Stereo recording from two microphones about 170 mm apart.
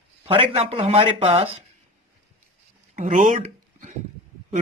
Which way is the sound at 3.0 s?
50° right (ahead or behind).